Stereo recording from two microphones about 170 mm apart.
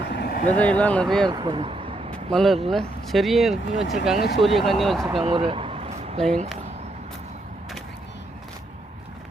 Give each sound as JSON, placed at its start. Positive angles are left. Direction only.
{"t": 0.1, "sound": "vehicle", "side_deg": 80}
{"t": 0.4, "sound": "speech", "side_deg": 10}
{"t": 1.3, "sound": "speech", "side_deg": -25}
{"t": 2.0, "sound": "vehicle", "side_deg": 5}
{"t": 2.6, "sound": "speech", "side_deg": 0}
{"t": 5.2, "sound": "a sound", "side_deg": -30}